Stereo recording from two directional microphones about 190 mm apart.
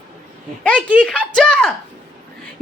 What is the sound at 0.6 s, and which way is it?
A child's voice, 5° left (ahead or behind).